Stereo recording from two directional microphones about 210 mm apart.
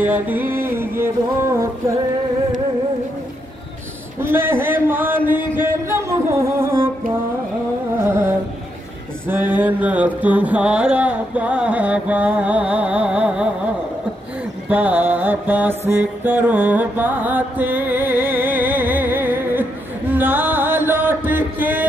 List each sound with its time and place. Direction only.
0.0 s music: 10° right (ahead or behind)
4.2 s a sound: 10° right (ahead or behind)
9.3 s mantra: 10° right (ahead or behind)
14.7 s mantra: 5° right (ahead or behind)
16.3 s music: 5° right (ahead or behind)